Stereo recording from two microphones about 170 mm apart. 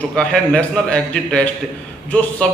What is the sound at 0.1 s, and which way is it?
A man's voice, 5° left (ahead or behind).